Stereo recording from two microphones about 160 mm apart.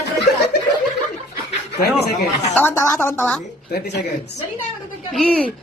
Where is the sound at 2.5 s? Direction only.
15° left (ahead or behind).